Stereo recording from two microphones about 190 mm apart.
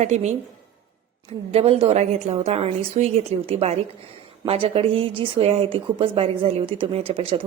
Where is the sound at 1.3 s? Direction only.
30° right (ahead or behind).